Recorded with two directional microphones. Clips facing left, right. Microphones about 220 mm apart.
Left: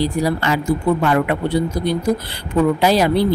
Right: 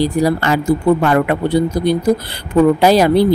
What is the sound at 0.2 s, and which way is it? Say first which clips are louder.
Speech: right 4 dB; 45° right (ahead or behind).